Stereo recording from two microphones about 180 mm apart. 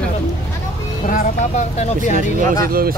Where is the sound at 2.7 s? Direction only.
55° right (ahead or behind).